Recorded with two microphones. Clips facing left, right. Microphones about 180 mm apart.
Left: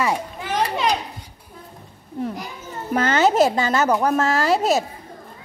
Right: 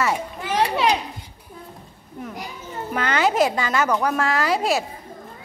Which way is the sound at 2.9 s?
40° left (ahead or behind).